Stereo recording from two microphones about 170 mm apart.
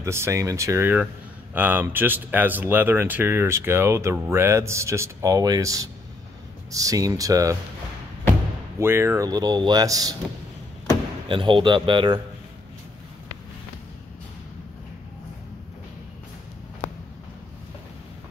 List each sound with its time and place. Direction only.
0.0 s speech: 15° right (ahead or behind)
8.7 s speech: 15° right (ahead or behind)
11.2 s speech: 30° right (ahead or behind)